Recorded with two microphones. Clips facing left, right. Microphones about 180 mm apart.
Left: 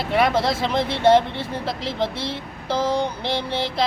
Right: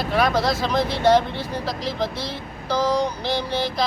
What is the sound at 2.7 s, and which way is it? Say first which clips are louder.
Speech: right 1 dB; 25° left (ahead or behind).